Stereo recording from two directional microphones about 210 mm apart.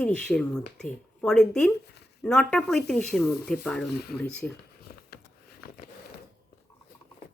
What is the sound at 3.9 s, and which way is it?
Speech, 50° left (ahead or behind).